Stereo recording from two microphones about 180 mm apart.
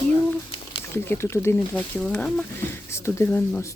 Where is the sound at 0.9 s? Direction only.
10° left (ahead or behind).